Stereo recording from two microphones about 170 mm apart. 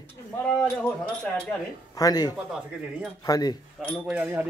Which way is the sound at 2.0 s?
25° left (ahead or behind).